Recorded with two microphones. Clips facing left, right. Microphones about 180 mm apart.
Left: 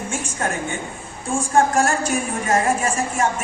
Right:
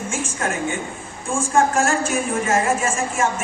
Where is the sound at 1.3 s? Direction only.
40° left (ahead or behind).